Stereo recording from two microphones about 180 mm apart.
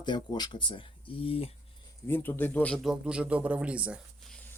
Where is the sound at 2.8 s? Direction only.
5° right (ahead or behind).